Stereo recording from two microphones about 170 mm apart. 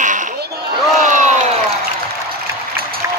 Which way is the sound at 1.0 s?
45° right (ahead or behind).